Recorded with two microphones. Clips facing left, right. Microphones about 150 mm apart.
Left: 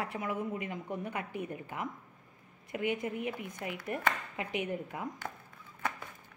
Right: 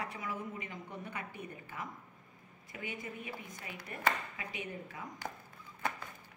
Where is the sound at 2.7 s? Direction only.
65° left (ahead or behind).